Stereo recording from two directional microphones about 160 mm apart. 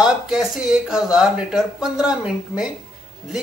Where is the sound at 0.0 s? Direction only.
5° right (ahead or behind).